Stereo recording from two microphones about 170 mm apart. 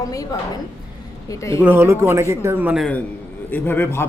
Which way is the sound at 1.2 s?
20° left (ahead or behind).